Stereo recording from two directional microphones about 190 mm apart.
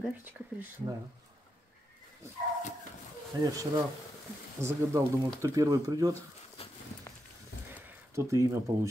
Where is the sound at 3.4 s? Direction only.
20° right (ahead or behind).